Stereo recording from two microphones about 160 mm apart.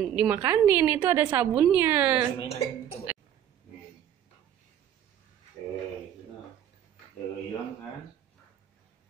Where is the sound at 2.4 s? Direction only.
40° left (ahead or behind).